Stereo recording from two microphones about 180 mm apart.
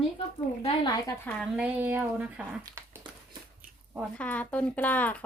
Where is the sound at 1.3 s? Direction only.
5° right (ahead or behind).